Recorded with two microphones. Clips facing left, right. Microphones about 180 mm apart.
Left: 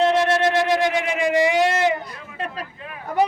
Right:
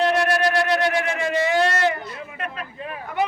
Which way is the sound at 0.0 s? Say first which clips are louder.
Left 2 dB; 25° left (ahead or behind).